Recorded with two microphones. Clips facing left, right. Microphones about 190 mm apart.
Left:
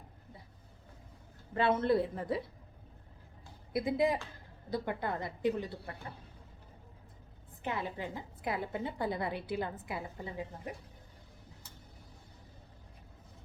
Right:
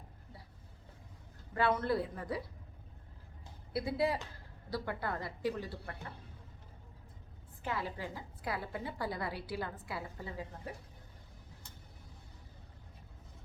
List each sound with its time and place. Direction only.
1.5 s a woman's voice: 20° left (ahead or behind)
3.7 s a woman's voice: 20° left (ahead or behind)
7.6 s a woman's voice: 20° left (ahead or behind)